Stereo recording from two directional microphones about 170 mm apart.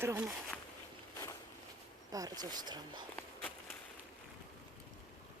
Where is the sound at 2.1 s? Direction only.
20° right (ahead or behind).